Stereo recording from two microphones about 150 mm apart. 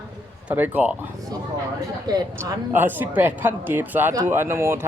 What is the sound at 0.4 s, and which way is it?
Speech, 10° right (ahead or behind).